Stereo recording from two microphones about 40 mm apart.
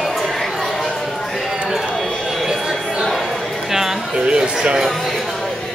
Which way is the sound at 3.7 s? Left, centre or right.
Centre.